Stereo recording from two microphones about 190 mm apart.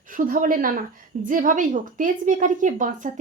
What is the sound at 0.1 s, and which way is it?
A woman's voice, 45° right (ahead or behind).